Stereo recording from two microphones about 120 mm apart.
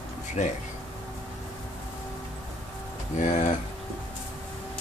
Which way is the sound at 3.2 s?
85° left.